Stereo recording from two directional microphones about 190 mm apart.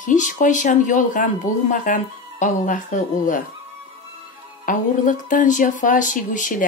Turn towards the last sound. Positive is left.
turn(degrees=45)  # may be behind; listen again after turning